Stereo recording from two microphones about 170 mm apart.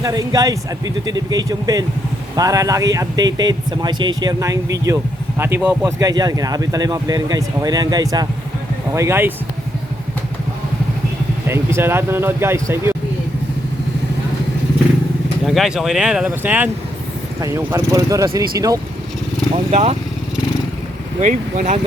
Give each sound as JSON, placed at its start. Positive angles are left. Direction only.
{"t": 0.0, "sound": "speech", "side_deg": -20}
{"t": 6.0, "sound": "speech", "side_deg": -20}
{"t": 11.4, "sound": "speech", "side_deg": -15}
{"t": 15.4, "sound": "speech", "side_deg": 0}
{"t": 19.7, "sound": "speech", "side_deg": -40}
{"t": 21.2, "sound": "speech", "side_deg": -45}